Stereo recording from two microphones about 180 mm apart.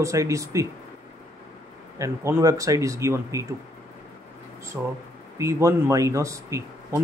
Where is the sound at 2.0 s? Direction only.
15° right (ahead or behind).